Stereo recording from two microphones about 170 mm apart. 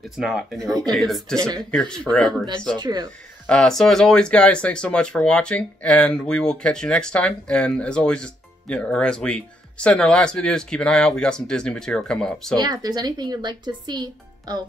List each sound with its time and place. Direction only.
0.2 s speech: centre (ahead or behind)
0.6 s a woman's voice: 20° right (ahead or behind)
0.9 s speech: centre (ahead or behind)
2.8 s a woman's voice: 25° right (ahead or behind)
3.4 s speech: 5° left (ahead or behind)
12.5 s a woman's voice: 25° right (ahead or behind)